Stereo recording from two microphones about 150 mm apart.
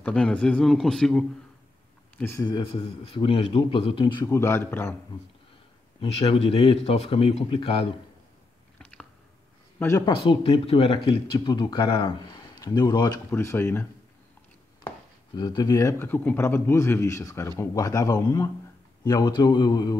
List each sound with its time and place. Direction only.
0.0 s speech: 10° left (ahead or behind)
2.1 s speech: 15° left (ahead or behind)
2.4 s speech: 25° left (ahead or behind)
2.8 s speech: 40° left (ahead or behind)
4.3 s a man's voice: 15° left (ahead or behind)
5.9 s speech: 40° left (ahead or behind)
9.8 s speech: 20° left (ahead or behind)
10.1 s speech: 35° left (ahead or behind)
11.3 s a man's voice: 30° left (ahead or behind)
15.3 s a man's voice: 25° left (ahead or behind)